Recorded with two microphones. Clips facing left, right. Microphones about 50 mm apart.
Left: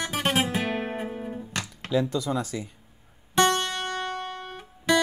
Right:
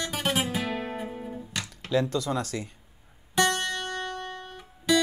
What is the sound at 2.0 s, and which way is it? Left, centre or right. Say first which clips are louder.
Speech: left 1 dB; centre.